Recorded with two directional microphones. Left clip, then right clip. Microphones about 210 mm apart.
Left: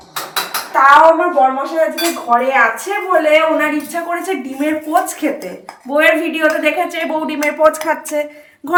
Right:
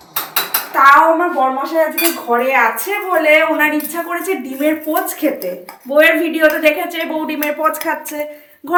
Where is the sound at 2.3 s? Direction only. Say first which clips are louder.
Left 2 dB; 10° left (ahead or behind).